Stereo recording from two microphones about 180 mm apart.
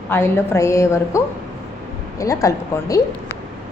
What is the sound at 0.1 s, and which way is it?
A woman's voice, 15° left (ahead or behind).